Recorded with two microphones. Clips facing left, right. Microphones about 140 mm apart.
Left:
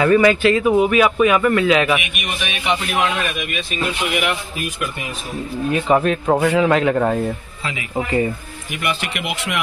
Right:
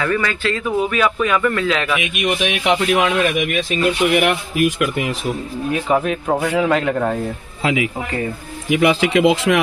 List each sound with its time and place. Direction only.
0.0 s speech: 20° left (ahead or behind)
2.1 s speech: 90° right
4.2 s speech: 50° right (ahead or behind)
5.7 s a man's voice: centre (ahead or behind)
8.6 s speech: 90° right